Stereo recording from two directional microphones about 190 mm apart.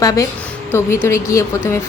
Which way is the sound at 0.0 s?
20° left (ahead or behind).